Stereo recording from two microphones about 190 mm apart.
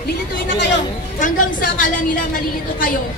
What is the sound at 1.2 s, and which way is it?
A woman's voice, 45° left (ahead or behind).